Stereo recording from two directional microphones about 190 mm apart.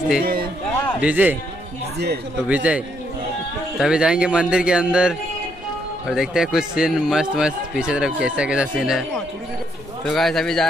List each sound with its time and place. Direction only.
0.2 s a sound: 50° right (ahead or behind)
1.0 s a man's voice: 10° right (ahead or behind)
2.4 s a man's voice: 5° right (ahead or behind)